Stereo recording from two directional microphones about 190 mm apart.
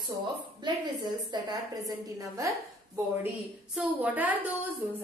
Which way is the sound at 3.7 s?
10° right (ahead or behind).